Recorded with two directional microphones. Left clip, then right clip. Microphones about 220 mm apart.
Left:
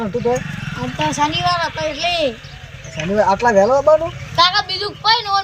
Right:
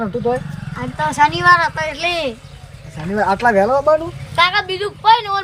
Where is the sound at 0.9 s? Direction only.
5° right (ahead or behind).